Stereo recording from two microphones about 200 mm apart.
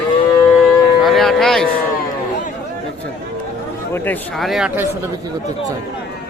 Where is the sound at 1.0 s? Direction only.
Centre (ahead or behind).